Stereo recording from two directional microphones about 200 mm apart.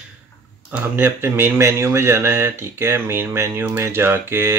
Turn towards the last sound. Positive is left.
turn(degrees=-10)  # may be behind; listen again after turning